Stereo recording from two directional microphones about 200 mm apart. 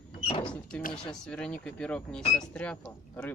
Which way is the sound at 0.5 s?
5° left (ahead or behind).